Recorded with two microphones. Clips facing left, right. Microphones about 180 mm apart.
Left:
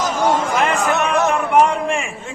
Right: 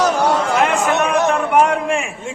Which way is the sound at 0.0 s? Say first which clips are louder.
Right 2 dB; 70° right (ahead or behind).